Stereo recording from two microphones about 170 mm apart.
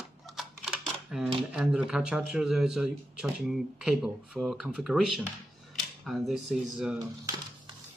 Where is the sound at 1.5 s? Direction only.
5° right (ahead or behind).